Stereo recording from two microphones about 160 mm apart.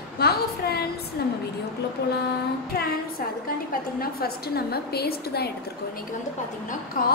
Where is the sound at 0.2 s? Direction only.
80° left.